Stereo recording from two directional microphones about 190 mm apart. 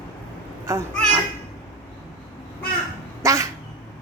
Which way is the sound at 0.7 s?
15° right (ahead or behind).